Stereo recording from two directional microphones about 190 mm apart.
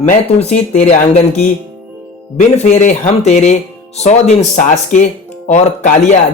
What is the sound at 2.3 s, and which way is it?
Speech, 40° left (ahead or behind).